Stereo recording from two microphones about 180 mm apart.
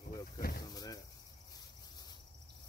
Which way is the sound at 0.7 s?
20° left (ahead or behind).